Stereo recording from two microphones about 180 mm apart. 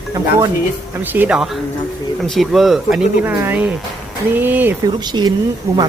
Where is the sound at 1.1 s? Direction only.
10° right (ahead or behind).